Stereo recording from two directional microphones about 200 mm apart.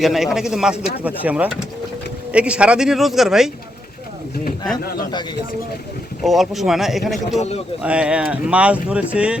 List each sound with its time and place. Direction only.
0.0 s speech: centre (ahead or behind)
4.8 s speech: 50° left (ahead or behind)
6.2 s speech: centre (ahead or behind)
7.3 s a man's voice: 35° left (ahead or behind)
7.8 s speech: 5° right (ahead or behind)